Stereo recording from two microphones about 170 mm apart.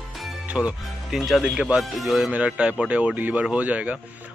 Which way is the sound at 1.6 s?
5° right (ahead or behind).